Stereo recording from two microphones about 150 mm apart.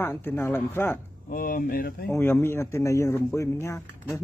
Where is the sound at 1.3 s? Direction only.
70° left (ahead or behind).